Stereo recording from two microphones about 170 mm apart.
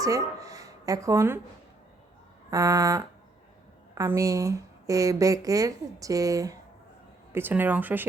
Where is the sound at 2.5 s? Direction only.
20° right (ahead or behind).